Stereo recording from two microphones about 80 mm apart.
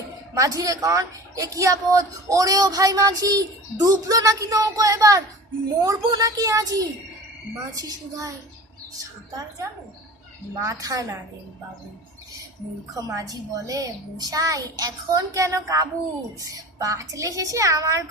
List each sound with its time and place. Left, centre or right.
0.3 s a woman's voice: right
10.6 s a woman's voice: right
13.0 s a woman's voice: right